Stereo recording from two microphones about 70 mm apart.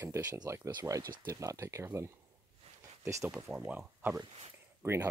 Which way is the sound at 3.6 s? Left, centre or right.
Right.